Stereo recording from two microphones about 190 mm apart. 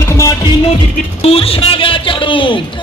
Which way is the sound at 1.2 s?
30° left (ahead or behind).